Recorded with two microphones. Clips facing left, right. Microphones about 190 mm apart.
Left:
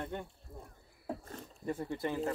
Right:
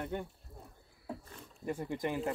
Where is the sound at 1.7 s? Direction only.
15° right (ahead or behind).